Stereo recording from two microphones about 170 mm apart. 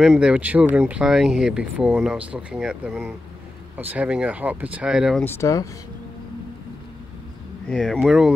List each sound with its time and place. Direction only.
0.0 s speech: 5° right (ahead or behind)
5.2 s speech: 15° left (ahead or behind)
7.6 s speech: 5° left (ahead or behind)